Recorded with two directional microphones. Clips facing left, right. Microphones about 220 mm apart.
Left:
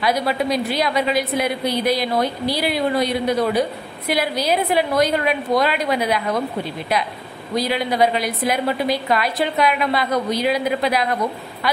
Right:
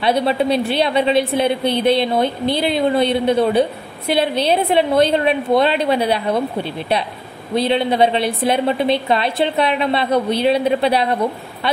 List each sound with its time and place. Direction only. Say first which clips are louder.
0.0 s a woman's voice: right 4 dB; 30° right (ahead or behind)
7.5 s a woman's voice: right 4 dB; 25° right (ahead or behind)